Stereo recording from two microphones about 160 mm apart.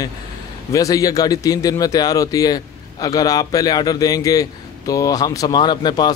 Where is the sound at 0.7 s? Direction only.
20° left (ahead or behind).